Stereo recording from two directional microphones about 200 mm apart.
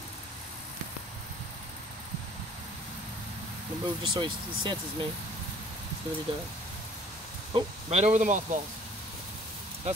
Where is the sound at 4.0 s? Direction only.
25° right (ahead or behind).